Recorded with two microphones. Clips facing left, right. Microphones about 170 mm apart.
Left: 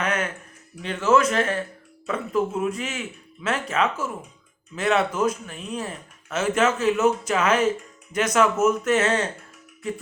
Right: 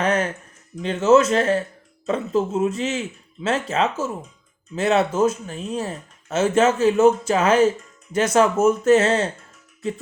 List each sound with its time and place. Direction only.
0.0 s speech: 30° right (ahead or behind)